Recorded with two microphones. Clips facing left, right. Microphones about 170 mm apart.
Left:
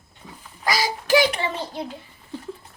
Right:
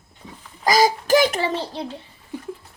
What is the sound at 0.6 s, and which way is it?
A child's voice, 45° right (ahead or behind).